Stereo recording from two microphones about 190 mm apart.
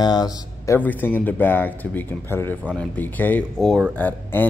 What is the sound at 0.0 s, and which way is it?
Speech, 20° left (ahead or behind).